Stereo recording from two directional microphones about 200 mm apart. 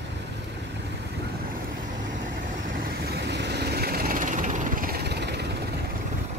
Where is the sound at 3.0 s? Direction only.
55° right (ahead or behind).